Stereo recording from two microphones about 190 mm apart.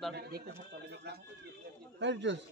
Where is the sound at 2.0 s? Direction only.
70° right (ahead or behind).